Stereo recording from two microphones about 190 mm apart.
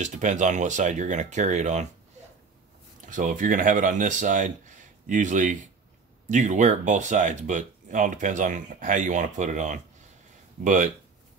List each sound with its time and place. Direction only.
0.0 s speech: 40° right (ahead or behind)
3.1 s speech: 45° right (ahead or behind)